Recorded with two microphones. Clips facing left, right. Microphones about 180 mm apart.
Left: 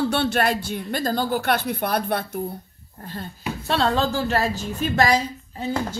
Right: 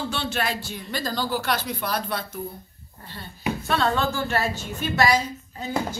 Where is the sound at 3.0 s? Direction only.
45° left (ahead or behind).